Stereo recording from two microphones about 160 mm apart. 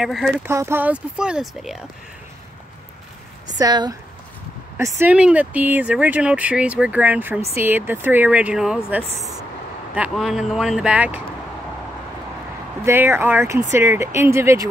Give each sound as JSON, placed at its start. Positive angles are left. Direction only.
{"t": 0.0, "sound": "speech", "side_deg": 0}
{"t": 0.5, "sound": "speech", "side_deg": -15}
{"t": 3.5, "sound": "speech", "side_deg": -25}
{"t": 12.8, "sound": "speech", "side_deg": -15}